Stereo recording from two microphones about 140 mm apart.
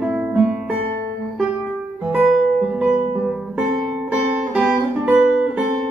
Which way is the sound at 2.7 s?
5° right (ahead or behind).